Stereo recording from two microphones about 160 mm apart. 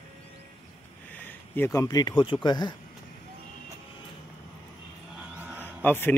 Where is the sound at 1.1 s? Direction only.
10° left (ahead or behind); by 2.7 s 30° left (ahead or behind).